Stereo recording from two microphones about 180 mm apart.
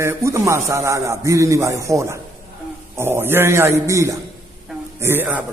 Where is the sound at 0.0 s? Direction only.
15° right (ahead or behind).